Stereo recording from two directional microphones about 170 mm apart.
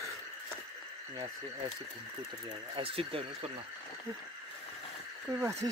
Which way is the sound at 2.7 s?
30° right (ahead or behind).